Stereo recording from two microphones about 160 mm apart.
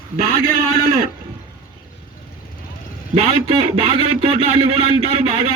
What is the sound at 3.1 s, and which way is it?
A man's voice, 40° right (ahead or behind).